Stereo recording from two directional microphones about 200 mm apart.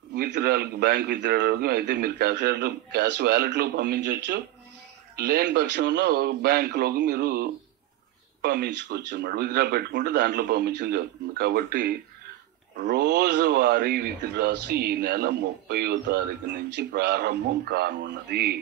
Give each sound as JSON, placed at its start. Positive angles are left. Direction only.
{"t": 0.1, "sound": "a man's voice", "side_deg": -55}